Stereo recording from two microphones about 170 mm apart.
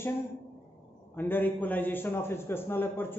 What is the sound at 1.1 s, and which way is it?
A man's voice, 10° left (ahead or behind).